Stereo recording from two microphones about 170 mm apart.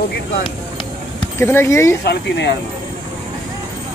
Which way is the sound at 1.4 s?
15° left (ahead or behind).